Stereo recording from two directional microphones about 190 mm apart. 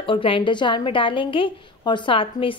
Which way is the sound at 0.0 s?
25° left (ahead or behind).